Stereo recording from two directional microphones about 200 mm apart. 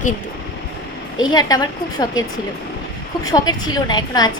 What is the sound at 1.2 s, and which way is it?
A woman's voice, 20° left (ahead or behind).